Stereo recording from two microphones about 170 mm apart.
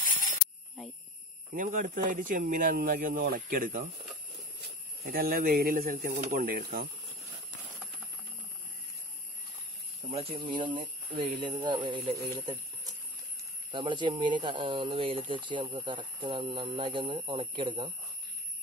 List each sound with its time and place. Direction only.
1.5 s speech: 55° right (ahead or behind)
5.0 s speech: 60° right (ahead or behind)
10.0 s a sound: 45° right (ahead or behind)
10.4 s speech: 30° right (ahead or behind)